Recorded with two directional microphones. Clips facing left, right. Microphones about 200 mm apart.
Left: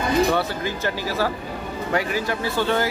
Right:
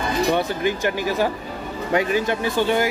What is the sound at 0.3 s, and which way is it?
Speech, 15° right (ahead or behind).